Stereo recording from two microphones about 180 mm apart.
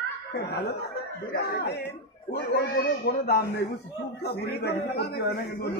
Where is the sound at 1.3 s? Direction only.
60° left (ahead or behind).